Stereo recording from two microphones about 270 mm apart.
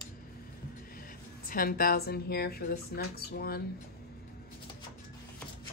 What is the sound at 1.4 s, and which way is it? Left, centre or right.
Speech, left.